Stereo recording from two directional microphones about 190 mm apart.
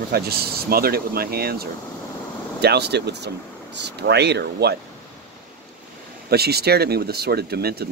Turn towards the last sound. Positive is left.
turn(degrees=-55)  # may be behind; listen again after turning